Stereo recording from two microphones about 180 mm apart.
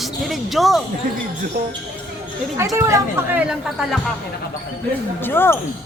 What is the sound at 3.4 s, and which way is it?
Speech, centre (ahead or behind).